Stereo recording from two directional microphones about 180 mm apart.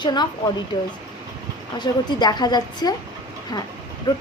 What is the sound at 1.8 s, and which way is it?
A woman's voice, 25° left (ahead or behind).